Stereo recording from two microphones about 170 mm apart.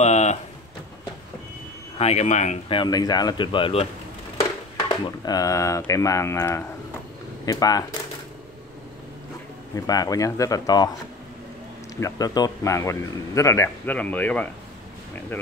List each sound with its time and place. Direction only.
0.0 s a sound: 40° left (ahead or behind)
2.0 s speech: 40° left (ahead or behind)
2.7 s speech: 25° left (ahead or behind)
9.8 s speech: 20° left (ahead or behind)
12.0 s a man's voice: 20° left (ahead or behind)